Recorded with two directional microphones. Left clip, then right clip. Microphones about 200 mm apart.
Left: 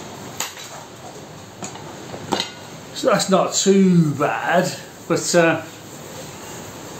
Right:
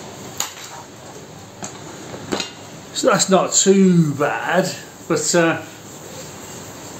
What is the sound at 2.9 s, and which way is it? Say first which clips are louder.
A man's voice: right 2 dB; 30° right (ahead or behind).